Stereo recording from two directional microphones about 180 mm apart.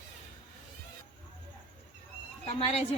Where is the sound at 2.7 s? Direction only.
35° left (ahead or behind).